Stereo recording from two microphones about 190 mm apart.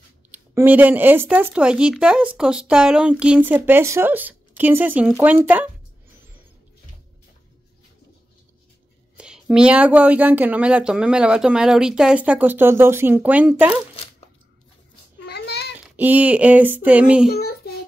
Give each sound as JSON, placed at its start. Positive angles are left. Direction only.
{"t": 0.3, "sound": "speech", "side_deg": -10}
{"t": 9.1, "sound": "speech", "side_deg": -5}
{"t": 15.2, "sound": "a sound", "side_deg": 60}
{"t": 16.0, "sound": "speech", "side_deg": -10}
{"t": 17.3, "sound": "a child's voice", "side_deg": 55}